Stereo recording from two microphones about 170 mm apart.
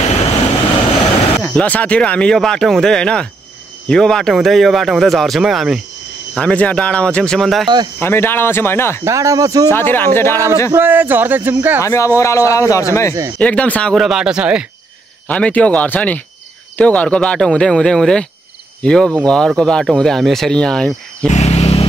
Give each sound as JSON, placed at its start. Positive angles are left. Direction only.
{"t": 1.4, "sound": "speech", "side_deg": 10}
{"t": 8.0, "sound": "speech", "side_deg": 15}
{"t": 9.0, "sound": "speech", "side_deg": -20}
{"t": 9.7, "sound": "speech", "side_deg": 10}
{"t": 10.3, "sound": "speech", "side_deg": -15}
{"t": 11.8, "sound": "a man's voice", "side_deg": 15}
{"t": 13.4, "sound": "speech", "side_deg": 5}
{"t": 15.2, "sound": "speech", "side_deg": 10}
{"t": 21.3, "sound": "vehicle", "side_deg": 40}